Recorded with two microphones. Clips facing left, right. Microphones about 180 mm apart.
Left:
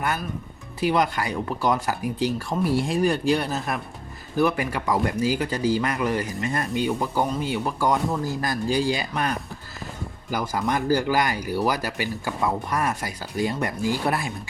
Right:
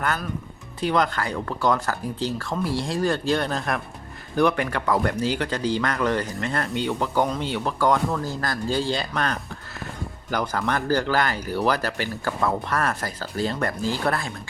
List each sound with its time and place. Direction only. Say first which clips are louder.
0.8 s speech: left 1 dB; 10° left (ahead or behind)
3.2 s speech: even; 5° left (ahead or behind)
8.8 s speech: left 1 dB; 5° left (ahead or behind)